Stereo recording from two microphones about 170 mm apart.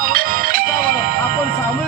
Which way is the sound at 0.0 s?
60° right (ahead or behind).